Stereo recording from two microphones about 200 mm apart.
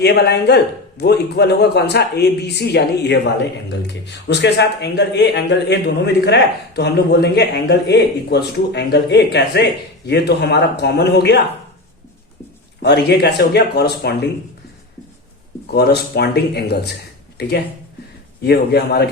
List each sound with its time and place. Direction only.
0.0 s a man's voice: 55° left (ahead or behind)
12.8 s a man's voice: 60° left (ahead or behind)
15.7 s a man's voice: 55° left (ahead or behind)
18.4 s a man's voice: 55° left (ahead or behind)